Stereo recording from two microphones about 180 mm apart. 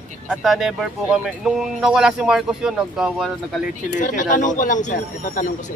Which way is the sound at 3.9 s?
45° left (ahead or behind).